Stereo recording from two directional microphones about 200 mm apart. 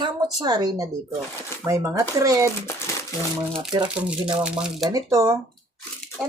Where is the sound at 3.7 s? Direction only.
25° right (ahead or behind).